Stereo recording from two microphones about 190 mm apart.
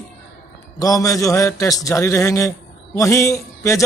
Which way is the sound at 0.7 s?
20° left (ahead or behind).